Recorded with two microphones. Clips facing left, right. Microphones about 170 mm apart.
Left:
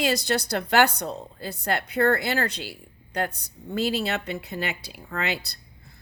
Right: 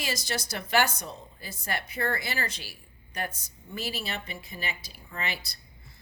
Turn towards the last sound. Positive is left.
turn(degrees=70)  # may be behind; listen again after turning